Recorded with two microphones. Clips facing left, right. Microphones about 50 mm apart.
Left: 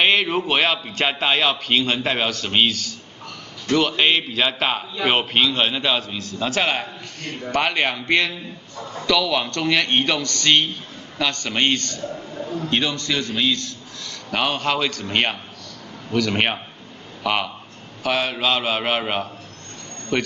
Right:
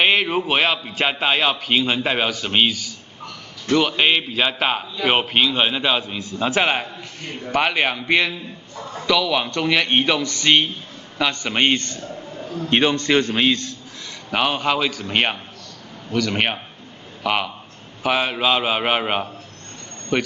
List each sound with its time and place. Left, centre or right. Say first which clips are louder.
0.0 s a man's voice: even; centre; by 12.0 s right
12.4 s a sound: left 1 dB; centre
12.6 s a man's voice: right 6 dB; right
14.3 s a man's voice: right 2 dB; centre